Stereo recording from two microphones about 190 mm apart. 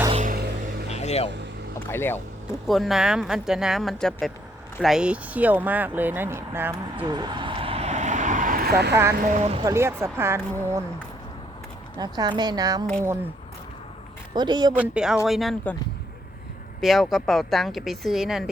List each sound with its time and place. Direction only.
0.1 s a sound: 40° right (ahead or behind)
0.9 s vehicle: 35° left (ahead or behind)
1.8 s speech: 10° left (ahead or behind)
2.5 s speech: centre (ahead or behind)
7.0 s vehicle: 20° right (ahead or behind); by 9.0 s 60° right (ahead or behind)
9.2 s speech: 35° right (ahead or behind)
9.6 s speech: 15° right (ahead or behind)
11.9 s speech: 20° right (ahead or behind)
14.3 s speech: 25° right (ahead or behind)
14.7 s speech: 5° right (ahead or behind)
16.8 s speech: centre (ahead or behind)